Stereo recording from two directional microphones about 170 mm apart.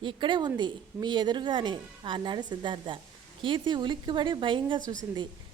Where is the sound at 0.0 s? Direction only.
30° right (ahead or behind).